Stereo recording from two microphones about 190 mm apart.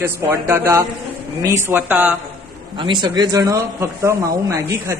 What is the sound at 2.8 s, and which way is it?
Speech, 25° right (ahead or behind).